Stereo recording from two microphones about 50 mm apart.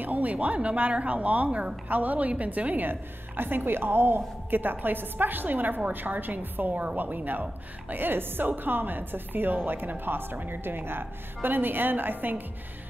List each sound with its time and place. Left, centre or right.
0.0 s speech: right
1.9 s a woman's voice: right